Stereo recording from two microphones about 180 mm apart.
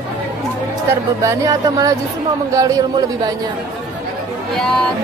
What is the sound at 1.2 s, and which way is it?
Speech, 20° right (ahead or behind).